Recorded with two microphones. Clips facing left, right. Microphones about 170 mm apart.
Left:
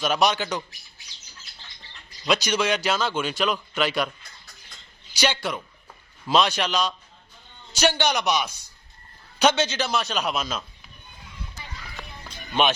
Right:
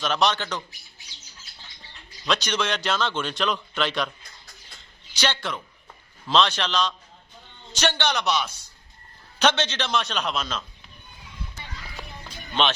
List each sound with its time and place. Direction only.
0.0 s a man's voice: 10° left (ahead or behind)
2.2 s a man's voice: 10° left (ahead or behind)
5.1 s a man's voice: 10° left (ahead or behind)